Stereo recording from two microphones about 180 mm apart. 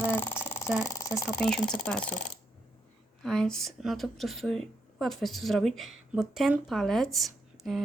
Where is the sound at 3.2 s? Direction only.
5° left (ahead or behind).